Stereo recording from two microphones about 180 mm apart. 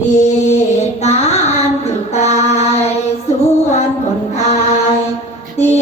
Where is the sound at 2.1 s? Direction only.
40° left (ahead or behind).